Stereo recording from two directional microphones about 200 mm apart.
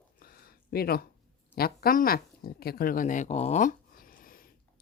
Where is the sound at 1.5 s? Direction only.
50° left (ahead or behind).